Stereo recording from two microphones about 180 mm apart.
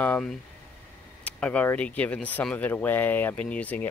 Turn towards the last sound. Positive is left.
turn(degrees=10)  # may be behind; listen again after turning